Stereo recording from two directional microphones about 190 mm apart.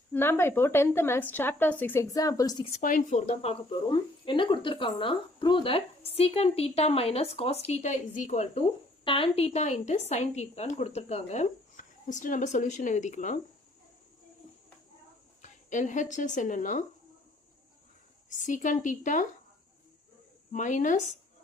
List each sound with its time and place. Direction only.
0.1 s speech: 10° left (ahead or behind)
2.7 s speech: 40° left (ahead or behind)
15.4 s speech: 40° left (ahead or behind)
18.4 s speech: 40° left (ahead or behind)
20.5 s speech: 40° left (ahead or behind)